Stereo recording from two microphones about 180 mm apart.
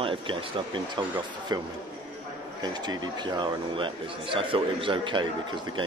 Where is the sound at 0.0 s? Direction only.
30° right (ahead or behind).